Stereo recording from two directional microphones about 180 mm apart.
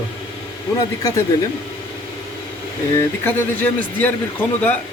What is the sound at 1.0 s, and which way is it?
Speech, 20° left (ahead or behind).